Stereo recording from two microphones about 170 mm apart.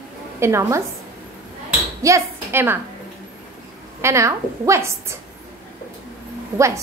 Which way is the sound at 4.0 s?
15° right (ahead or behind).